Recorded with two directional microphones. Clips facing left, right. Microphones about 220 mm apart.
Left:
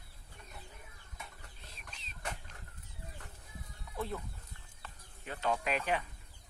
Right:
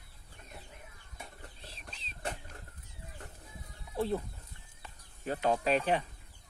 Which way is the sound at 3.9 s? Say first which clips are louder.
Right 7 dB; 30° right (ahead or behind).